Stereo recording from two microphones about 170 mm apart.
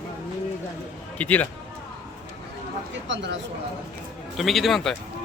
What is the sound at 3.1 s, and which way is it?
Speech, 90° right.